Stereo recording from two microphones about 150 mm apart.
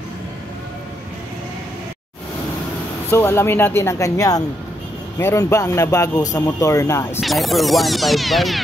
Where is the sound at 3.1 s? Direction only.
15° left (ahead or behind).